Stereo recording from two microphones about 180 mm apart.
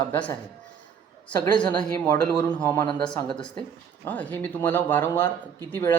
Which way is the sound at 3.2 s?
25° left (ahead or behind).